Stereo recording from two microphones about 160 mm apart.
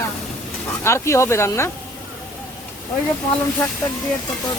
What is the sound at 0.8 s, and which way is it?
Speech, 15° left (ahead or behind).